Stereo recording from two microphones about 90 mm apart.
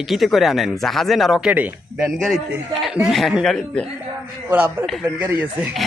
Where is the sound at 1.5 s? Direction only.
15° right (ahead or behind).